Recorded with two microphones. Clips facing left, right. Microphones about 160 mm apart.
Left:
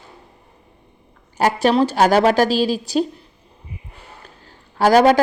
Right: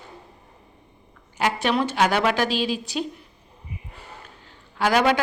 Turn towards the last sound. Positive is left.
turn(degrees=40)  # may be behind; listen again after turning